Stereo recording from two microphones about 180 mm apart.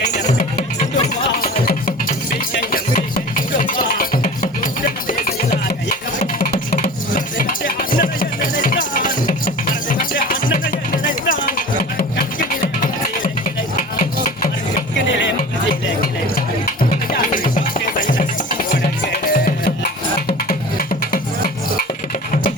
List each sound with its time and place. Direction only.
0.0 s music: 40° left (ahead or behind)
1.4 s music: 55° left (ahead or behind)
6.1 s a sound: 50° left (ahead or behind)
7.3 s music: 50° left (ahead or behind)
15.7 s a sound: 55° left (ahead or behind)
17.3 s music: 50° left (ahead or behind)